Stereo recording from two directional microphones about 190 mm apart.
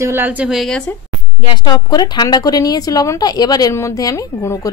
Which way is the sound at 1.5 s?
20° left (ahead or behind).